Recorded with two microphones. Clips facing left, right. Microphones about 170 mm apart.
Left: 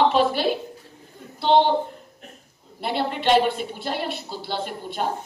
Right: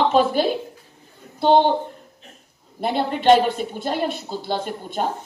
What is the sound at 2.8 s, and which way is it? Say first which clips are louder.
A woman's voice: right 4 dB; 45° right (ahead or behind).